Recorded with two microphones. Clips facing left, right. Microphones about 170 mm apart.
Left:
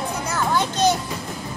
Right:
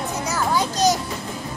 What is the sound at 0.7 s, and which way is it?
Music, 30° left (ahead or behind).